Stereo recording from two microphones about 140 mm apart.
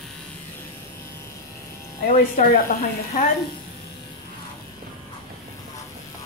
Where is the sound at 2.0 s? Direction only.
80° left.